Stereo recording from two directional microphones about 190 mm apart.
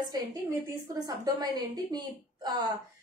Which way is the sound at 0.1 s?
20° right (ahead or behind).